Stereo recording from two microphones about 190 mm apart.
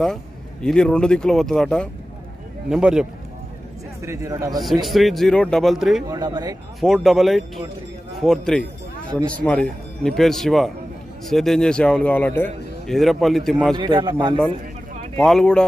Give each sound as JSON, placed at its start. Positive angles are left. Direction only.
{"t": 0.0, "sound": "a man's voice", "side_deg": 0}
{"t": 4.0, "sound": "a man's voice", "side_deg": -15}
{"t": 4.8, "sound": "a man's voice", "side_deg": 0}
{"t": 6.0, "sound": "speech", "side_deg": -20}
{"t": 6.8, "sound": "a man's voice", "side_deg": 0}
{"t": 13.7, "sound": "speech", "side_deg": -25}
{"t": 15.1, "sound": "a man's voice", "side_deg": 5}